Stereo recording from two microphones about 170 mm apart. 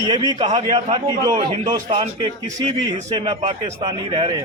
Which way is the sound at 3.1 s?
35° right (ahead or behind).